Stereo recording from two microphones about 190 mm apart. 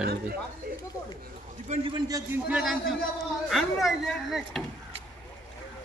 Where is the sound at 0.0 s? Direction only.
55° right (ahead or behind).